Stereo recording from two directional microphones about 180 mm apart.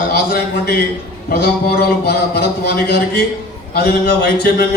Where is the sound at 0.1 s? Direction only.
60° left (ahead or behind).